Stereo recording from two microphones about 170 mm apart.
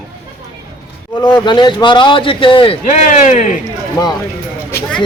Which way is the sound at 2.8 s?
45° left (ahead or behind).